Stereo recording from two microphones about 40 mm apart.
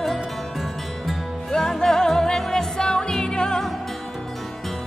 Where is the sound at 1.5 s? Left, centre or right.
Centre.